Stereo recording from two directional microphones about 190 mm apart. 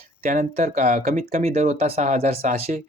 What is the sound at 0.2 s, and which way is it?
Speech, 40° right (ahead or behind).